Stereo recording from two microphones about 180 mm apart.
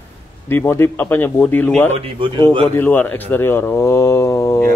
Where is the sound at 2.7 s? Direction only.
10° left (ahead or behind).